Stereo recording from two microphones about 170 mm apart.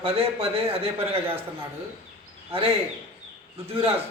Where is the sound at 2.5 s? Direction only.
35° right (ahead or behind).